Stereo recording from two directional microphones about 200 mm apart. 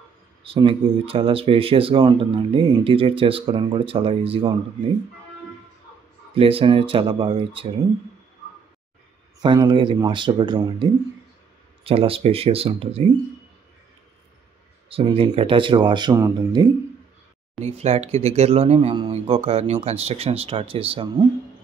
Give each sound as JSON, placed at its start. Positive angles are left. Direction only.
{"t": 0.4, "sound": "speech", "side_deg": -25}
{"t": 6.3, "sound": "speech", "side_deg": -30}
{"t": 9.4, "sound": "speech", "side_deg": -20}
{"t": 14.9, "sound": "speech", "side_deg": -30}
{"t": 17.6, "sound": "speech", "side_deg": -30}